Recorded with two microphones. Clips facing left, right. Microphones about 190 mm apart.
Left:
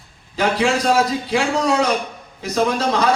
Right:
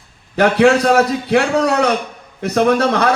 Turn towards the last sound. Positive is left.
turn(degrees=-60)  # may be behind; listen again after turning